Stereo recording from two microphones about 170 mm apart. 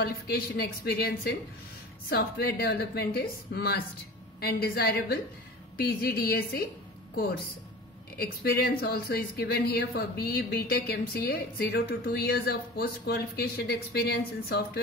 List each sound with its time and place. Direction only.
0.0 s a woman's voice: 70° left (ahead or behind)
8.2 s speech: 65° left (ahead or behind)